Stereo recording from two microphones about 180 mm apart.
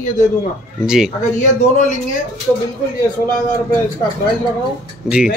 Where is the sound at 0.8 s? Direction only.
5° right (ahead or behind).